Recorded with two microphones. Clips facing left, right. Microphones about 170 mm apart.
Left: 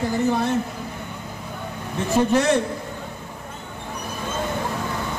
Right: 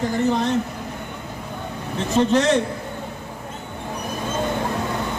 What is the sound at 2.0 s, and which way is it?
Speech, 10° left (ahead or behind).